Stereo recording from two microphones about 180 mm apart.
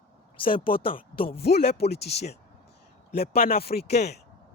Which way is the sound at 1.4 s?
65° left (ahead or behind).